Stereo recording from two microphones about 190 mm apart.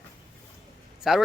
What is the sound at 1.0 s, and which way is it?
Speech, centre (ahead or behind).